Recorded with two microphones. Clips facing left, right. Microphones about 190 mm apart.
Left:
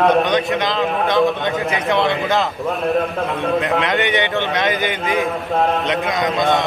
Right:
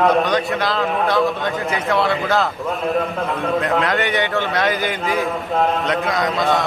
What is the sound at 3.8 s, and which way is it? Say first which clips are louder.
A man's voice: left 1 dB; 20° left (ahead or behind).